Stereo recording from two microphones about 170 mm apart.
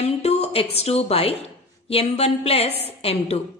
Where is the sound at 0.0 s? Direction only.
40° left (ahead or behind).